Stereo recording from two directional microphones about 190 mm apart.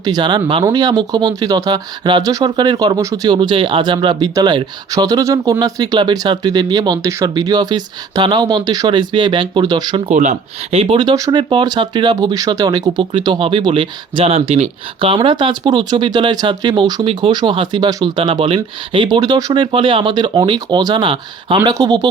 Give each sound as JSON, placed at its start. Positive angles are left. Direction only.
{"t": 0.0, "sound": "speech", "side_deg": -20}
{"t": 10.1, "sound": "speech", "side_deg": -40}